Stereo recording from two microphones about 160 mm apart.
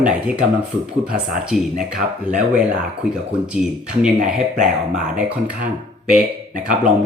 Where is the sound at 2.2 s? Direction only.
5° right (ahead or behind).